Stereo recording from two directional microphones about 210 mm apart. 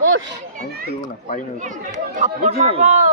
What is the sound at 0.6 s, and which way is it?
Children playing, 45° right (ahead or behind).